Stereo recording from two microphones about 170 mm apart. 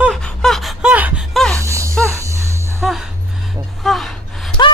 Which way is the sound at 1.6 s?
15° right (ahead or behind).